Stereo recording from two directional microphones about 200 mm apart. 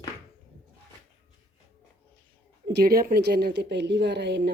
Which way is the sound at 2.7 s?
50° right (ahead or behind).